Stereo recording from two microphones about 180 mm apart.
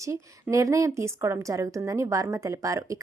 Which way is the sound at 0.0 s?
15° right (ahead or behind).